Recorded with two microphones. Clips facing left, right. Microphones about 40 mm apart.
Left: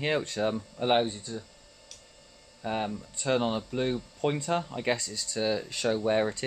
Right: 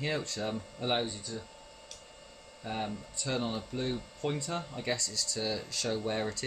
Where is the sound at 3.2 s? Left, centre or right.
Left.